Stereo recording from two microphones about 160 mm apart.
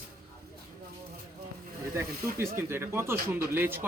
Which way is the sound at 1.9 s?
15° right (ahead or behind).